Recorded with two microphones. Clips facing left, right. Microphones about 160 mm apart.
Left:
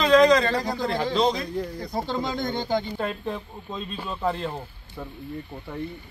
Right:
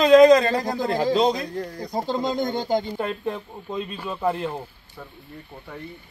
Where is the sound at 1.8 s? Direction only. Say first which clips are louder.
Right 2 dB; 15° right (ahead or behind).